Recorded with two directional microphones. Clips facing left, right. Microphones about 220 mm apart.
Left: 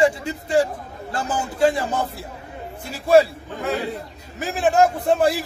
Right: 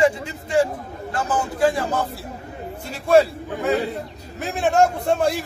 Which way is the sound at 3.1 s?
Centre (ahead or behind).